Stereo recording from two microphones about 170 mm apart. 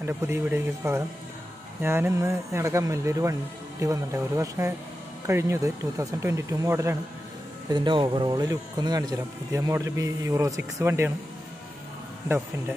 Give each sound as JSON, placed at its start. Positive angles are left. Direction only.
{"t": 0.0, "sound": "speech", "side_deg": -15}
{"t": 7.7, "sound": "speech", "side_deg": -25}